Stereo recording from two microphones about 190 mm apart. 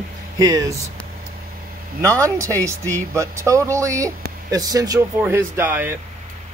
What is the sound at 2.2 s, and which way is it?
Speech, 15° right (ahead or behind).